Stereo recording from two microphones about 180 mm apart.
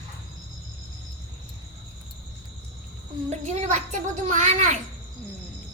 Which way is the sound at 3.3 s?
40° right (ahead or behind).